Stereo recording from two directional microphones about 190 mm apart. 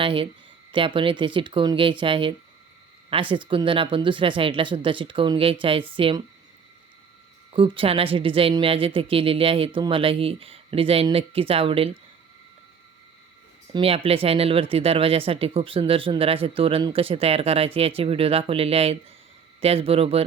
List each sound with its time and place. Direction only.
0.0 s speech: 25° right (ahead or behind)
7.5 s speech: 30° right (ahead or behind)
13.7 s speech: 30° right (ahead or behind)